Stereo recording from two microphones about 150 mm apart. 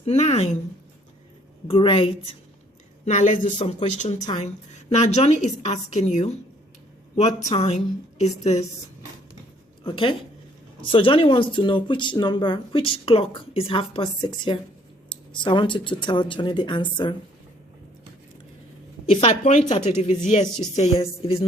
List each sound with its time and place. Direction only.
0.0 s speech: 45° left (ahead or behind)
1.6 s speech: 35° left (ahead or behind)
3.0 s a woman's voice: 50° left (ahead or behind)
9.8 s speech: 35° left (ahead or behind)
19.1 s a woman's voice: 50° left (ahead or behind)